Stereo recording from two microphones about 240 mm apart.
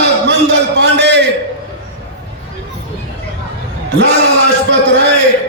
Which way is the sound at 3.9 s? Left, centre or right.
Right.